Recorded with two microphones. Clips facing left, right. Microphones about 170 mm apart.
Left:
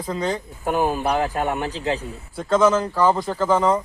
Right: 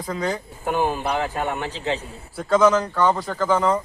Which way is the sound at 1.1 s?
40° left (ahead or behind).